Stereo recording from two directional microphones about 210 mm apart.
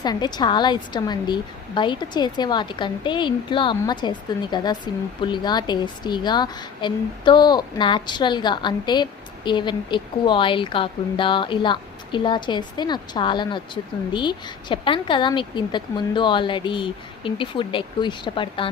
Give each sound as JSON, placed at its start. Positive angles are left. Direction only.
{"t": 0.0, "sound": "a woman's voice", "side_deg": 20}